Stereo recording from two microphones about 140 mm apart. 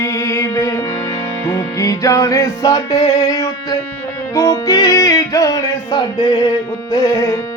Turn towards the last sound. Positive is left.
turn(degrees=20)  # may be behind; listen again after turning